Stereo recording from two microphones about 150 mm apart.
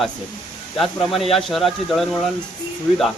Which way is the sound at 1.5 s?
Centre (ahead or behind).